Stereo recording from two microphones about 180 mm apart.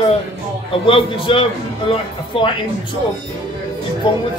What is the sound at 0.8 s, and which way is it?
A man's voice, 30° left (ahead or behind).